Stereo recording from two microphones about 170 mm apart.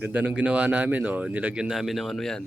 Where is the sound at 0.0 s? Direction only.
10° right (ahead or behind).